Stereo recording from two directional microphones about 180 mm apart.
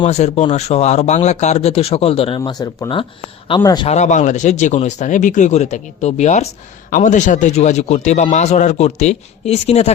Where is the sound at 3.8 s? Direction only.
40° left (ahead or behind).